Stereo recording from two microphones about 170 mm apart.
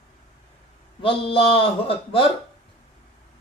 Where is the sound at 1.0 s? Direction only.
30° left (ahead or behind).